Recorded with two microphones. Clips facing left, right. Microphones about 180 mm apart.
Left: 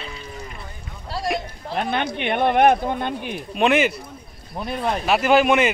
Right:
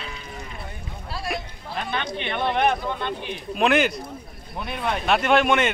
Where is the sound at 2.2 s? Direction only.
55° left (ahead or behind).